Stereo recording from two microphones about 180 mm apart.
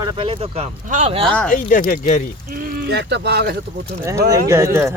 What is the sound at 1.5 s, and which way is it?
Speech, 50° left (ahead or behind).